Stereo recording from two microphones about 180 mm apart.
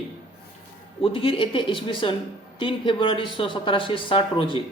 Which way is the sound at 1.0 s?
30° left (ahead or behind).